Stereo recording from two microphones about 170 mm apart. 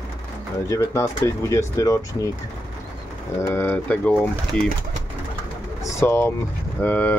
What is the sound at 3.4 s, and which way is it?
Speech, 10° left (ahead or behind).